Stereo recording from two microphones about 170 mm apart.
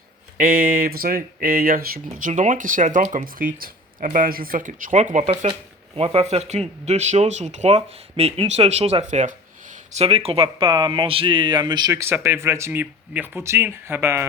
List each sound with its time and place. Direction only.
0.3 s speech: 55° right (ahead or behind); by 14.3 s 15° right (ahead or behind)